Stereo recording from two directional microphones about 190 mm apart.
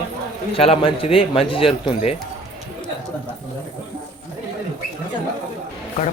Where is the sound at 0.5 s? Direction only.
30° left (ahead or behind).